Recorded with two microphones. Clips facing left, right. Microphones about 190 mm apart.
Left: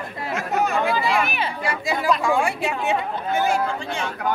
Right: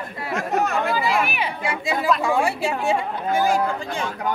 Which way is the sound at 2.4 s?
30° right (ahead or behind).